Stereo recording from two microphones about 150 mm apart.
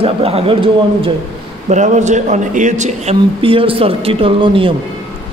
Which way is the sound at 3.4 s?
35° right (ahead or behind).